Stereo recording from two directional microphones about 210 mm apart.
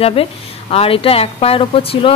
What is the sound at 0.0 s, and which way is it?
A woman's voice, 25° left (ahead or behind).